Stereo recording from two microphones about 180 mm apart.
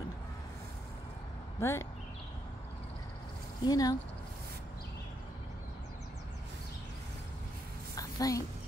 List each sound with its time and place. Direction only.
1.6 s speech: 15° left (ahead or behind)
3.6 s speech: 20° left (ahead or behind)
7.9 s a sound: 20° left (ahead or behind)